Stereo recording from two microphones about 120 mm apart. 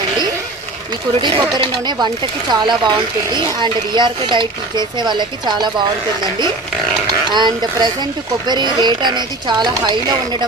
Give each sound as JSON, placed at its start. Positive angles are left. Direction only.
{"t": 1.2, "sound": "speech", "side_deg": -40}
{"t": 7.3, "sound": "speech", "side_deg": -40}